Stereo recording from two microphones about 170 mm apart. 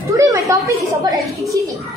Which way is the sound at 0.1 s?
20° right (ahead or behind).